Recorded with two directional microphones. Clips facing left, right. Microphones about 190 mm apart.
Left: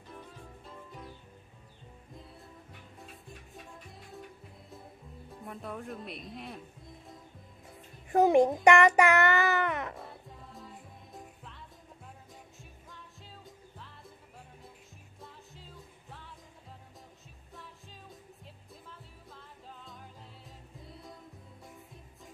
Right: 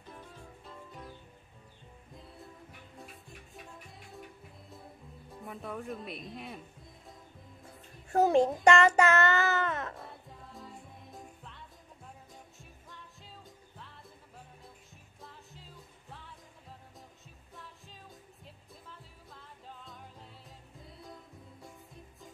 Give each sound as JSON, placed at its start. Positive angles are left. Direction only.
{"t": 5.4, "sound": "speech", "side_deg": 0}
{"t": 8.1, "sound": "child singing", "side_deg": 15}
{"t": 9.9, "sound": "music", "side_deg": 0}
{"t": 15.2, "sound": "music", "side_deg": 0}
{"t": 18.4, "sound": "music", "side_deg": 0}